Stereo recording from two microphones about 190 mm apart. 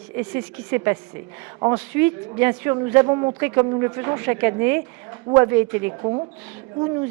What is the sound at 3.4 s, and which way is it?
A woman's voice, 10° right (ahead or behind).